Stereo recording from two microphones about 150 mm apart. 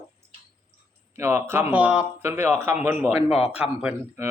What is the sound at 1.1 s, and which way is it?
Speech, 15° right (ahead or behind).